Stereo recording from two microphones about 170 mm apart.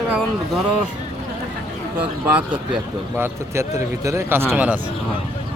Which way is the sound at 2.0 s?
5° right (ahead or behind).